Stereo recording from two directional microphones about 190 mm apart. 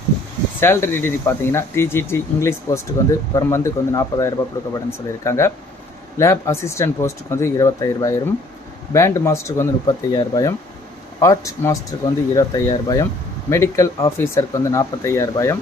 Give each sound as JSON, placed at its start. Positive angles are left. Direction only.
{"t": 0.6, "sound": "speech", "side_deg": 10}